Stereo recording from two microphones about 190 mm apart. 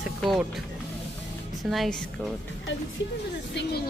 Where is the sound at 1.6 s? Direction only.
Centre (ahead or behind).